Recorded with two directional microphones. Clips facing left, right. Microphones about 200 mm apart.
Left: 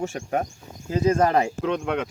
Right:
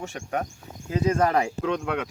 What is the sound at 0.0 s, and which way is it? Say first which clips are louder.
Speech: left 4 dB; 40° left (ahead or behind).